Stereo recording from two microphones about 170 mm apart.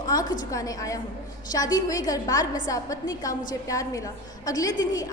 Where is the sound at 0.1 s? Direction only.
20° left (ahead or behind).